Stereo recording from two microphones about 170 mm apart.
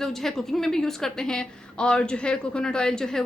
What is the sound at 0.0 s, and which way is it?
A woman's voice, centre (ahead or behind).